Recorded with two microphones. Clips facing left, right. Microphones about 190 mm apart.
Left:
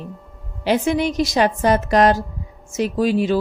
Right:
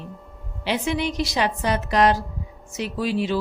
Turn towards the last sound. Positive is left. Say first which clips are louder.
# left 6 dB
turn(degrees=45)  # may be behind; listen again after turning